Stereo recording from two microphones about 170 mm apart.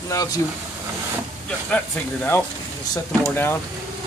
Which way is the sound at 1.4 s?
10° left (ahead or behind).